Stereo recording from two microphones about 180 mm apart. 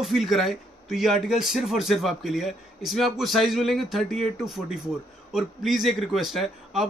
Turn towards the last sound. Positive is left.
turn(degrees=0)  # may be behind; listen again after turning